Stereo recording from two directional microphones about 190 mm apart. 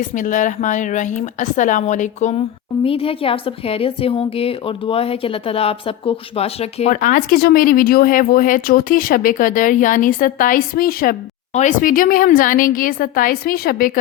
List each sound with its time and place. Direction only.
0.0 s a woman's voice: 40° left (ahead or behind)